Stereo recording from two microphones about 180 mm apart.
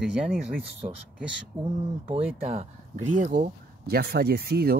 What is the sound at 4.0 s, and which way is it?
Speech, 60° right (ahead or behind).